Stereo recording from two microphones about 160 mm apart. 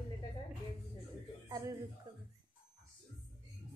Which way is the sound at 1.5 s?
20° right (ahead or behind).